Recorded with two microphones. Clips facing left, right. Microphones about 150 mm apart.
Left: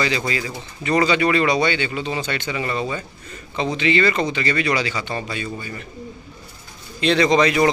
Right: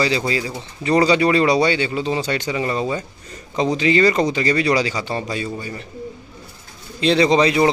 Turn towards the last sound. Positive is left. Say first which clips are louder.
# right 1 dB
turn(degrees=-30)  # may be behind; listen again after turning